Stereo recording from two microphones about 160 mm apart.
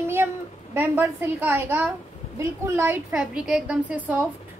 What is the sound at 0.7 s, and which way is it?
A woman's voice, 15° right (ahead or behind).